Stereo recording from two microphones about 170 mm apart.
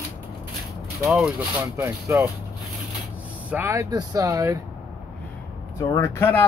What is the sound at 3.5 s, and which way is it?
Speech, 15° right (ahead or behind).